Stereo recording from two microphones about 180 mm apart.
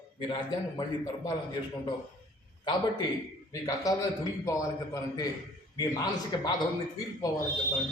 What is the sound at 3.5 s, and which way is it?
A man's voice, 20° left (ahead or behind).